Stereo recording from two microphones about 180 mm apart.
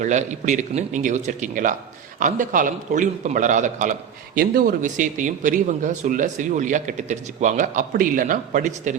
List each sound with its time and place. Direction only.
0.0 s a man's voice: 40° right (ahead or behind)